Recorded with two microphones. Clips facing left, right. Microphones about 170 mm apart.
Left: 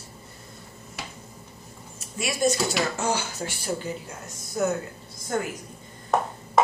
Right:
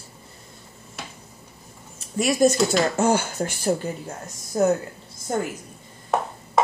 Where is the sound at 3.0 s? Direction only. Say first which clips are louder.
Right 7 dB; 55° right (ahead or behind).